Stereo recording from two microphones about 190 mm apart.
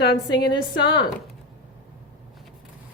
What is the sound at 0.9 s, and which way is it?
Speech, 20° left (ahead or behind).